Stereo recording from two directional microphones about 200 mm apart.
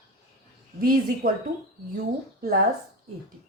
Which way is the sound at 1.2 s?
45° right (ahead or behind).